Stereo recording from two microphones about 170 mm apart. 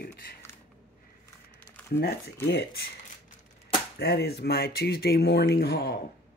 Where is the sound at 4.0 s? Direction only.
75° left (ahead or behind).